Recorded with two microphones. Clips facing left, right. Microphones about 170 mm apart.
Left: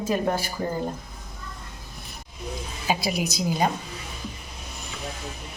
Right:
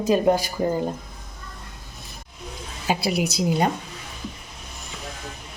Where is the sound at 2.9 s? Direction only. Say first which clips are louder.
Right 3 dB; 65° right (ahead or behind).